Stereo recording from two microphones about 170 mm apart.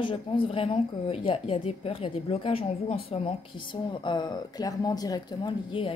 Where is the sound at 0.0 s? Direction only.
30° left (ahead or behind).